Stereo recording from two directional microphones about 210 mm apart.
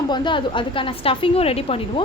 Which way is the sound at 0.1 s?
20° left (ahead or behind).